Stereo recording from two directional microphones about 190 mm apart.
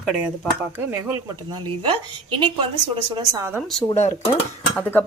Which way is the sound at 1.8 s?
25° right (ahead or behind).